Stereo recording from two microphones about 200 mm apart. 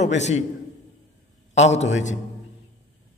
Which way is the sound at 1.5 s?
35° left (ahead or behind).